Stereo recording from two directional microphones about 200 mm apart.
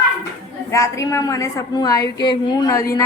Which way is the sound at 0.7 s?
15° left (ahead or behind).